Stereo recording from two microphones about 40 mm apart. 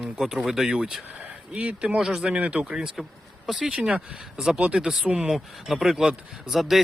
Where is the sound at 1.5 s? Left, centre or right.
Right.